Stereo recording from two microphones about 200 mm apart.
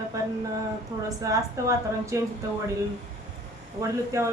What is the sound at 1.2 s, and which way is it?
A woman's voice, 15° right (ahead or behind).